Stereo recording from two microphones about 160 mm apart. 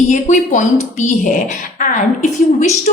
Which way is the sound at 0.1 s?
50° left (ahead or behind).